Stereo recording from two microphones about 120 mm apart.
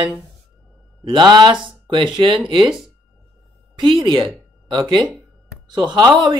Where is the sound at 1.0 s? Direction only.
40° right (ahead or behind).